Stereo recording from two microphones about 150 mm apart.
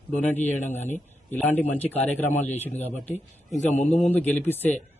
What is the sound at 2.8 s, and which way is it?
Speech, 45° left (ahead or behind).